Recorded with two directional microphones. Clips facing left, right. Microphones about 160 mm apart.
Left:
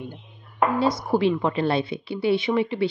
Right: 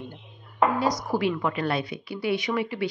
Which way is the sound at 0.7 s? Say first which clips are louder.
Left 4 dB; 25° left (ahead or behind).